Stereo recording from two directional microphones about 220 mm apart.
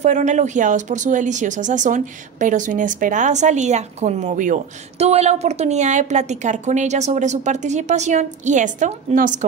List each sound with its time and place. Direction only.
0.0 s speech: 35° right (ahead or behind)